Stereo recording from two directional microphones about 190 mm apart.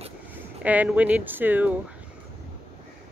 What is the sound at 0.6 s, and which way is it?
Speech, 10° right (ahead or behind).